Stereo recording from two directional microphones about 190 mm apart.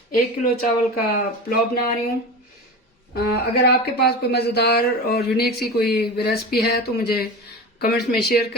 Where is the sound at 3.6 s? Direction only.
55° left (ahead or behind).